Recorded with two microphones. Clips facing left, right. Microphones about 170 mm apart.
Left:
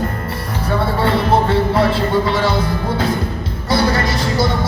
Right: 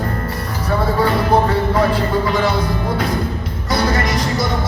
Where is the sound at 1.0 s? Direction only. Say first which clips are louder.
Even; 30° left (ahead or behind).